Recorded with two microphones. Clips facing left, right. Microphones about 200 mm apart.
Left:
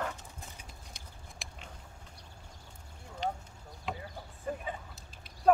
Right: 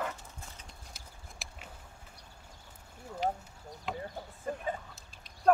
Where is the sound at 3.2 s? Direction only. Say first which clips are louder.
Right 2 dB; 5° right (ahead or behind).